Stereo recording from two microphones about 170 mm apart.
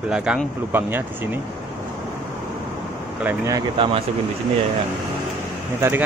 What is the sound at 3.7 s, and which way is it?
Speech, 35° right (ahead or behind).